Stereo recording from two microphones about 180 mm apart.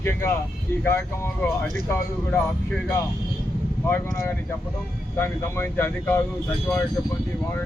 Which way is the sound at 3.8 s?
15° left (ahead or behind).